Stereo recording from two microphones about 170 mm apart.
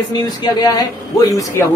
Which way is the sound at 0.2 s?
25° left (ahead or behind).